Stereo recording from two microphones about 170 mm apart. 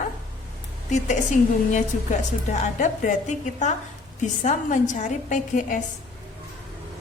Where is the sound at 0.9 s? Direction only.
45° left (ahead or behind).